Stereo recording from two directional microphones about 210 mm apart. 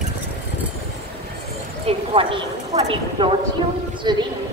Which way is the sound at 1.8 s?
25° right (ahead or behind).